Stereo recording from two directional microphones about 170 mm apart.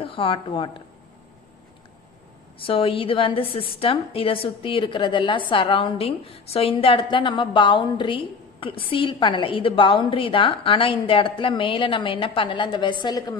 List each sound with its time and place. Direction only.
0.0 s a woman's voice: 30° left (ahead or behind)
2.6 s a woman's voice: 35° left (ahead or behind)